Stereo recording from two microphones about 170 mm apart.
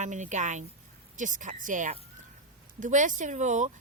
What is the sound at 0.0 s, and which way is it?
Speech, 45° right (ahead or behind).